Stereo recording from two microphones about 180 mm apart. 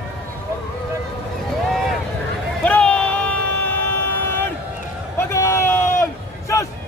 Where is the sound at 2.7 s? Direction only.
5° left (ahead or behind).